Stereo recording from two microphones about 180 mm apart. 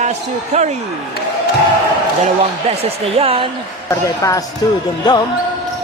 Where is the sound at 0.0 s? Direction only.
40° right (ahead or behind).